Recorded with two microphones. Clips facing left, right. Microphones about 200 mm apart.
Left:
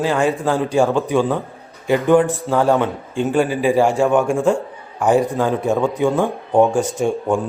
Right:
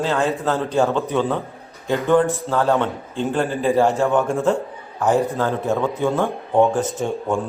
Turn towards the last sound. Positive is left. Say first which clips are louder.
# left 4 dB
turn(degrees=15)  # may be behind; listen again after turning